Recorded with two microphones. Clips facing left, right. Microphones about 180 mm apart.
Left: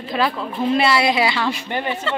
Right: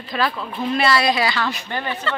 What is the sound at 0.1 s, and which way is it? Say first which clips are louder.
A woman's voice: left 2 dB; 20° left (ahead or behind).